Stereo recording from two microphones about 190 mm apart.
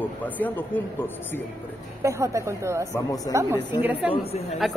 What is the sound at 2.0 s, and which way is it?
Speech, 15° right (ahead or behind).